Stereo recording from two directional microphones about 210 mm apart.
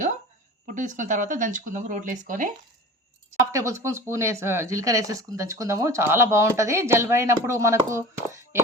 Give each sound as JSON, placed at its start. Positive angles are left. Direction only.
{"t": 0.7, "sound": "speech", "side_deg": -40}
{"t": 3.5, "sound": "speech", "side_deg": -15}